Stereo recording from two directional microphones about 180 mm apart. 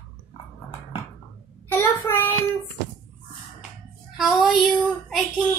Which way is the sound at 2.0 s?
15° left (ahead or behind).